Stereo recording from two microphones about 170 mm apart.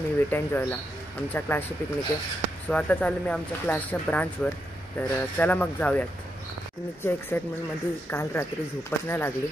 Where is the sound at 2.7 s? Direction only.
5° left (ahead or behind).